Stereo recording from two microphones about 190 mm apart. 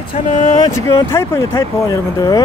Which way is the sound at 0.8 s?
15° left (ahead or behind).